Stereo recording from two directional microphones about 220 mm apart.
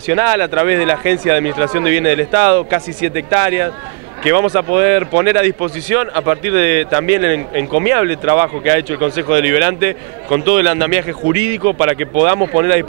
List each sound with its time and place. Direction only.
0.1 s speech: 15° right (ahead or behind)